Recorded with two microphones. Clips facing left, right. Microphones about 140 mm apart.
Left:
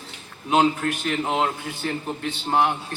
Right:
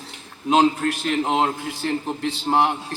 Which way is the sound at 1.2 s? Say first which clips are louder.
Right 3 dB; 30° right (ahead or behind).